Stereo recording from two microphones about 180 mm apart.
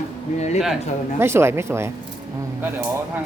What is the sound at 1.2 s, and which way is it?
Speech, 15° right (ahead or behind).